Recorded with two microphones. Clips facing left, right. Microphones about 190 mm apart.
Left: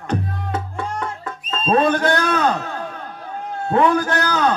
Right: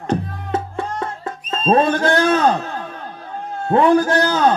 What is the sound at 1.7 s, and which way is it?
Speech, 30° right (ahead or behind).